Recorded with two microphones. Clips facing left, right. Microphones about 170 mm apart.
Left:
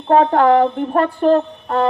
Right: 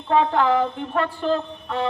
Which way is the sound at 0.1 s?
50° left (ahead or behind).